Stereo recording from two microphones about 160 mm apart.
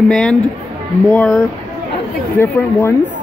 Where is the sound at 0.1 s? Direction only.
5° left (ahead or behind).